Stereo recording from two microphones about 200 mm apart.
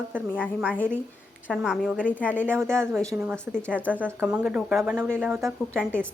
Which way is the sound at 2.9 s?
Centre (ahead or behind).